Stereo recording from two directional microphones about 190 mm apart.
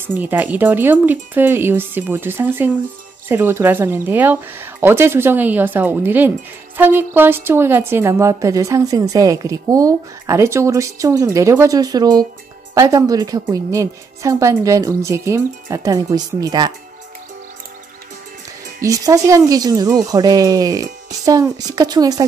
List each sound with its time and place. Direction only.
0.0 s a woman's voice: 10° right (ahead or behind)
18.8 s speech: 15° right (ahead or behind)